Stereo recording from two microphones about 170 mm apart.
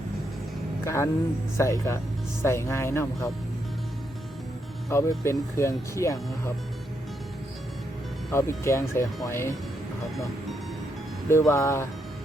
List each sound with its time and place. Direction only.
0.9 s speech: 15° left (ahead or behind)
4.9 s speech: 15° left (ahead or behind)
8.3 s speech: 15° left (ahead or behind)
11.3 s speech: 15° left (ahead or behind)